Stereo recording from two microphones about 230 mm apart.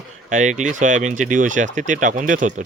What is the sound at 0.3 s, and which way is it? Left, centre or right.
Speech, right.